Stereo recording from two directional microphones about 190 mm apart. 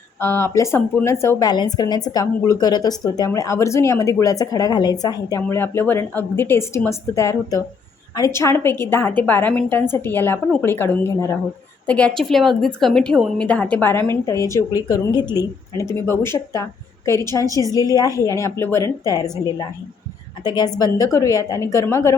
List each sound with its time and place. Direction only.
0.2 s speech: 10° left (ahead or behind)